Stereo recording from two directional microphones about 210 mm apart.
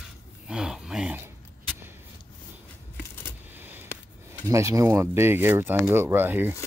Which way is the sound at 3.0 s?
10° left (ahead or behind).